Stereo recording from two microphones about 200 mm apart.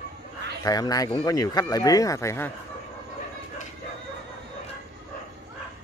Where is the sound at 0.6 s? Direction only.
20° left (ahead or behind).